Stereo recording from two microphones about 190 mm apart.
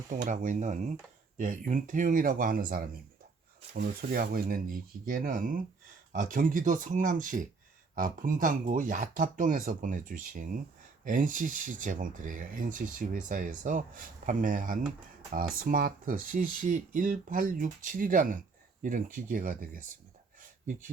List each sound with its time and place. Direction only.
0.1 s speech: 40° right (ahead or behind)